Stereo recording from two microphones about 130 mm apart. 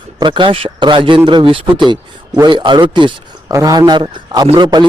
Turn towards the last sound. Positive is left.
turn(degrees=-35)  # may be behind; listen again after turning